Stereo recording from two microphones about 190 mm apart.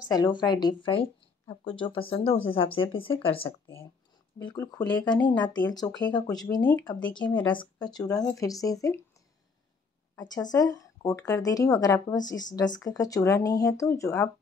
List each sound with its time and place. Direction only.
0.1 s a woman's voice: 20° left (ahead or behind)
3.4 s a woman's voice: 15° left (ahead or behind)
6.7 s speech: 10° left (ahead or behind)
7.2 s a woman's voice: 25° left (ahead or behind)
10.1 s a woman's voice: 20° left (ahead or behind)